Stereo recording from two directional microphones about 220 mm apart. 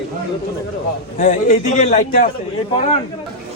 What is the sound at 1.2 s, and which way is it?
A man's voice, 35° left (ahead or behind).